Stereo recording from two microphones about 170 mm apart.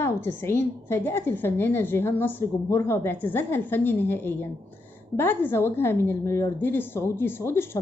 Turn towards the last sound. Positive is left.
turn(degrees=15)  # may be behind; listen again after turning